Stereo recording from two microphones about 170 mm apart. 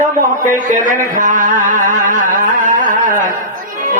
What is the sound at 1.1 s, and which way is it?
Carnatic music, 50° right (ahead or behind).